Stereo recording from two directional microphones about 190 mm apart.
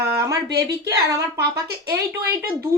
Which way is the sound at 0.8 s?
15° right (ahead or behind).